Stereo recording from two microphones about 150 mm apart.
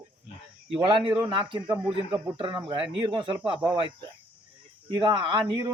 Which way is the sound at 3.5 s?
10° right (ahead or behind).